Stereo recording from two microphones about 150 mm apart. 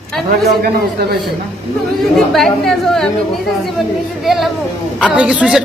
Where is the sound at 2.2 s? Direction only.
Centre (ahead or behind).